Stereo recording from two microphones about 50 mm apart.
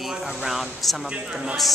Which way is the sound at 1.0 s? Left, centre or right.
Centre.